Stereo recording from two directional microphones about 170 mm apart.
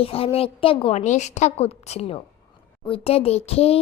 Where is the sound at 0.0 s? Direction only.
35° left (ahead or behind).